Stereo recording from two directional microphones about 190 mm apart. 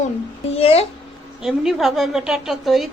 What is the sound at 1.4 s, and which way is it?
A woman's voice, centre (ahead or behind).